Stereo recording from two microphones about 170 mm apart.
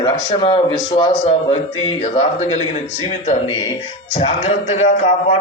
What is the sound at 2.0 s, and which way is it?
Speech, 40° left (ahead or behind).